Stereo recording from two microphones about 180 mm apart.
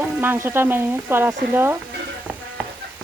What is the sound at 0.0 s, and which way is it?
Stir, 10° right (ahead or behind).